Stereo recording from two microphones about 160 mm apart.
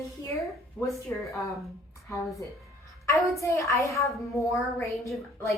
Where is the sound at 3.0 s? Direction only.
20° left (ahead or behind).